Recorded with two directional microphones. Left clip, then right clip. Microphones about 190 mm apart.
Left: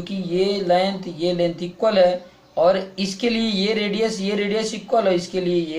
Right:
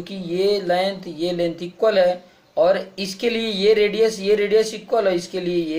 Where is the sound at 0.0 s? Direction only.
45° right (ahead or behind).